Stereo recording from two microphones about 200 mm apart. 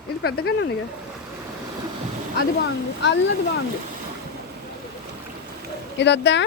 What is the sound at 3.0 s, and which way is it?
Speech, 65° left (ahead or behind).